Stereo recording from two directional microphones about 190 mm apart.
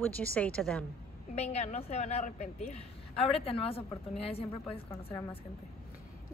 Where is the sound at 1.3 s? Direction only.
35° left (ahead or behind).